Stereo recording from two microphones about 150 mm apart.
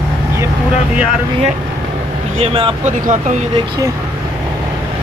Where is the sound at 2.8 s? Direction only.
55° right (ahead or behind).